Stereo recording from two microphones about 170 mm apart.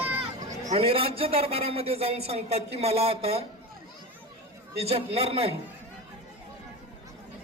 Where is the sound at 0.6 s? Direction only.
40° right (ahead or behind).